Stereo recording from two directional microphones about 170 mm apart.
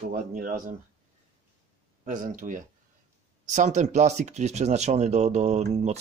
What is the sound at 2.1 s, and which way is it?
Speech, 50° right (ahead or behind).